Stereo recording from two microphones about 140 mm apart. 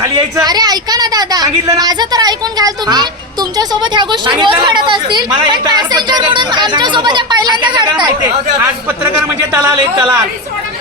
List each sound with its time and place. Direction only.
0.0 s a woman's voice: 25° right (ahead or behind)
9.4 s a man's voice: 15° right (ahead or behind)